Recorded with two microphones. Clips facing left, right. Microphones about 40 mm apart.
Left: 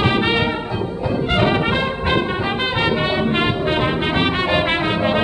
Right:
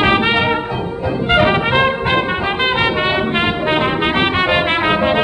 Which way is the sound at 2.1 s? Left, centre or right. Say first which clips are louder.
Right 3 dB; right.